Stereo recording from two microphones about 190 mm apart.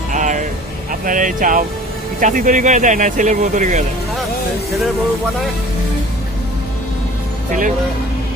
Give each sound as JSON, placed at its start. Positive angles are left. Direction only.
{"t": 0.1, "sound": "vehicle", "side_deg": -40}
{"t": 1.0, "sound": "speech", "side_deg": -45}